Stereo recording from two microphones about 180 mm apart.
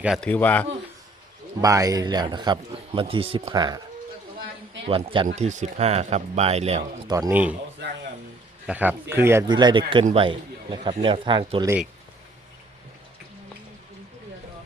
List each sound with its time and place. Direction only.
0.0 s a man's voice: centre (ahead or behind)
0.3 s a man's voice: 10° left (ahead or behind)
1.6 s a man's voice: 20° right (ahead or behind)
4.9 s a man's voice: 30° right (ahead or behind)
5.3 s speech: 40° right (ahead or behind)
7.1 s a man's voice: 20° right (ahead or behind)
8.6 s speech: 10° right (ahead or behind)
9.5 s a man's voice: 25° right (ahead or behind)